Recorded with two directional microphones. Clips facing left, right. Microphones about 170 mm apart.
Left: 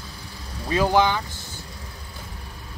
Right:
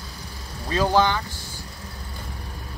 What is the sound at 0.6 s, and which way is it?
Speech, 15° left (ahead or behind).